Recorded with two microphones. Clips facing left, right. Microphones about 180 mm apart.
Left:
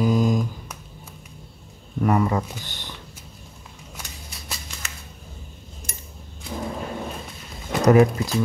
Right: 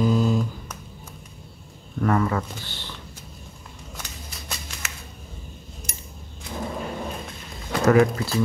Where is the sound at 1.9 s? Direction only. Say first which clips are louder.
Left 1 dB; 15° left (ahead or behind).